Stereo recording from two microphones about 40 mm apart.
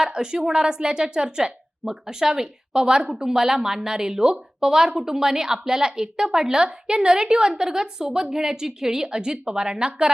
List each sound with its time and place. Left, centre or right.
0.0 s a woman's voice: centre